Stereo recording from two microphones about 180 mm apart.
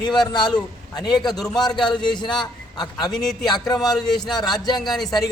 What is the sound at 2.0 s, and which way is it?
A man's voice, 25° left (ahead or behind).